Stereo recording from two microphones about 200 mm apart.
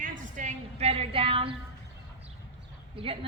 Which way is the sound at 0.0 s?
40° right (ahead or behind).